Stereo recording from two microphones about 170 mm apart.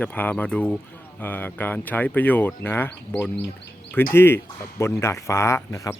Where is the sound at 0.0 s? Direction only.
10° left (ahead or behind).